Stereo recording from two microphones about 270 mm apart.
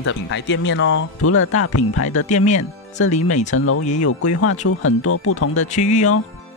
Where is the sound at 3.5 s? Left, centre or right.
Left.